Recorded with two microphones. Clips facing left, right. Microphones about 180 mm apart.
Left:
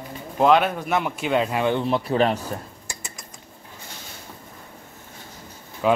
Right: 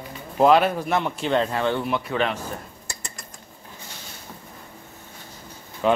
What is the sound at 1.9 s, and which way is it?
Speech, 35° left (ahead or behind).